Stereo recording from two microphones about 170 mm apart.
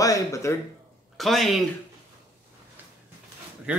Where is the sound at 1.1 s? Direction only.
Centre (ahead or behind).